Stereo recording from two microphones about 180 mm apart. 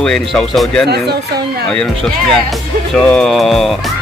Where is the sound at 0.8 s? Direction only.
65° right (ahead or behind).